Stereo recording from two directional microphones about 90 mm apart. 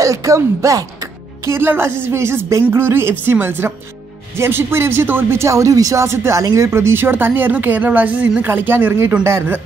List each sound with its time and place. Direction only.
0.0 s speech: 35° right (ahead or behind)
1.5 s speech: 25° right (ahead or behind)